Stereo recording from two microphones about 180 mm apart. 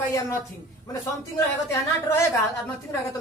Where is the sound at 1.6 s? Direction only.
15° left (ahead or behind).